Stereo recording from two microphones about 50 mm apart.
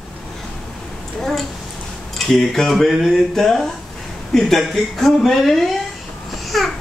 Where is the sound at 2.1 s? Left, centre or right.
Centre.